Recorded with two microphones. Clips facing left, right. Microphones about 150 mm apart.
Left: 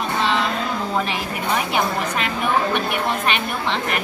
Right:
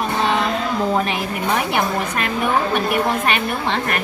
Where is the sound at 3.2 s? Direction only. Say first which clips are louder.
Right 2 dB; 55° right (ahead or behind).